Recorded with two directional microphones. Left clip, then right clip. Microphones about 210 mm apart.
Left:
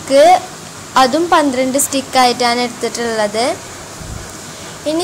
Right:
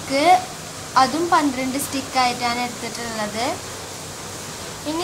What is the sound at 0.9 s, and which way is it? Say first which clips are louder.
A child's voice: left 6 dB; 25° left (ahead or behind).